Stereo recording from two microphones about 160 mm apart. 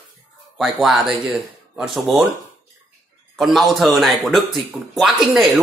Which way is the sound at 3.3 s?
Centre (ahead or behind).